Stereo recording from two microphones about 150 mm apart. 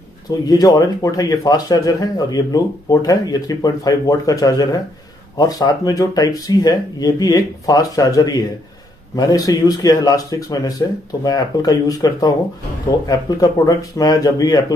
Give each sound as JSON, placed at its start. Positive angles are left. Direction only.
{"t": 0.5, "sound": "speech", "side_deg": 25}